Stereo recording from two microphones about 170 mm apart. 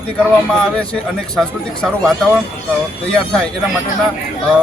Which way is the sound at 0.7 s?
5° left (ahead or behind).